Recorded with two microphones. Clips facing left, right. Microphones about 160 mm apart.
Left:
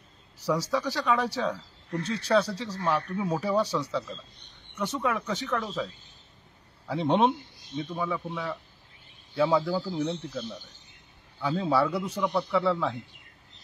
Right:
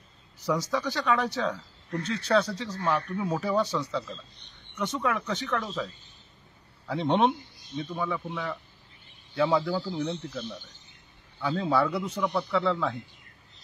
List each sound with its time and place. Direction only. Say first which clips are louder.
0.5 s speech: left 1 dB; 10° left (ahead or behind)
6.9 s speech: left 1 dB; 5° left (ahead or behind)